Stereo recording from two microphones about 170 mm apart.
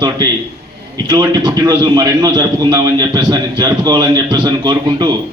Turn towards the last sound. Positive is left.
turn(degrees=-25)  # may be behind; listen again after turning